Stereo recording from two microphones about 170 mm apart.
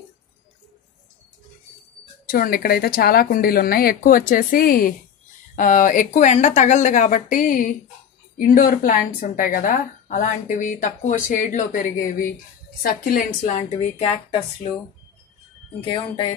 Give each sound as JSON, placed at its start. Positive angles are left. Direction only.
{"t": 2.2, "sound": "a woman's voice", "side_deg": 55}
{"t": 15.8, "sound": "speech", "side_deg": 30}